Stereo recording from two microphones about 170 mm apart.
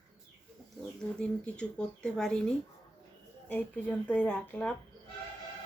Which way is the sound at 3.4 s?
10° left (ahead or behind).